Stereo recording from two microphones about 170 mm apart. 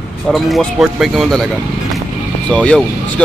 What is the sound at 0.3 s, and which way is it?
Speech, centre (ahead or behind).